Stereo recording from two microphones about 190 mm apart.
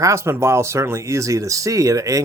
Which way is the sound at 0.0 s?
15° right (ahead or behind).